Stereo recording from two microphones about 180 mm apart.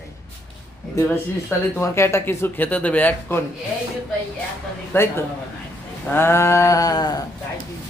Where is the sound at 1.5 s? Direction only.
15° left (ahead or behind).